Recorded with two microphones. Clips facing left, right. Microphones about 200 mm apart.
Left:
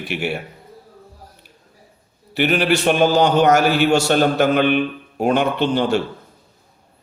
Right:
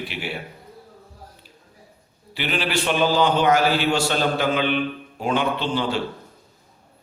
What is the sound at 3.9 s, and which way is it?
A man's voice, 65° left (ahead or behind).